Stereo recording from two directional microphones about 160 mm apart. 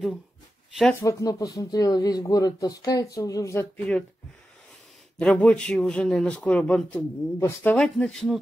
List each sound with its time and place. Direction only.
0.9 s speech: 20° left (ahead or behind)
5.1 s speech: 5° left (ahead or behind)